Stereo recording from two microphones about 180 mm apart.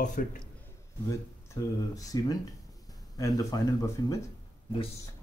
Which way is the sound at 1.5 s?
20° left (ahead or behind).